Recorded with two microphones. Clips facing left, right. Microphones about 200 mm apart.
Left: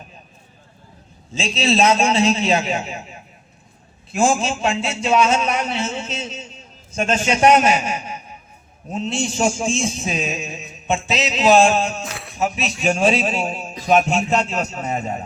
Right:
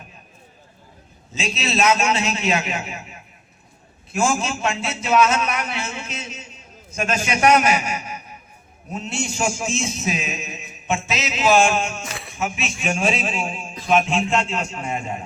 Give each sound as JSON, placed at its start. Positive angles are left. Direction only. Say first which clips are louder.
{"t": 1.3, "sound": "a man's voice", "louder": "left 5 dB", "side_deg": 30}
{"t": 12.1, "sound": "music", "louder": "left 1 dB", "side_deg": 0}
{"t": 12.4, "sound": "a man's voice", "louder": "left 4 dB", "side_deg": 35}